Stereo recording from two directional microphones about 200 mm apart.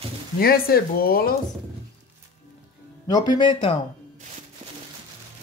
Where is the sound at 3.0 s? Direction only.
20° left (ahead or behind).